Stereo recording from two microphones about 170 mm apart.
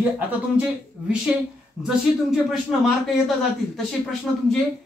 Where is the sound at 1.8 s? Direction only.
Centre (ahead or behind).